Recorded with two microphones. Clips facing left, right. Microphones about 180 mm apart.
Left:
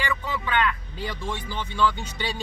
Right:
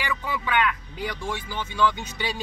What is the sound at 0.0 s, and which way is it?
Speech, 10° right (ahead or behind).